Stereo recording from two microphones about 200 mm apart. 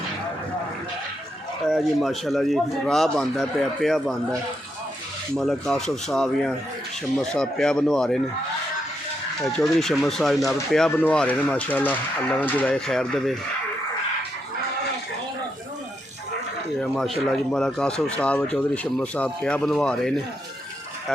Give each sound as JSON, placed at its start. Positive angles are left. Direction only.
{"t": 1.7, "sound": "speech", "side_deg": 0}
{"t": 5.4, "sound": "speech", "side_deg": 5}
{"t": 9.4, "sound": "speech", "side_deg": 0}
{"t": 16.8, "sound": "speech", "side_deg": 0}